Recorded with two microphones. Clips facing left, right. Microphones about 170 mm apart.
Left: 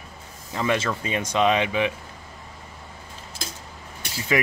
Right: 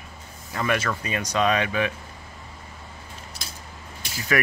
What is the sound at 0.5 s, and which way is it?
Speech, 20° left (ahead or behind).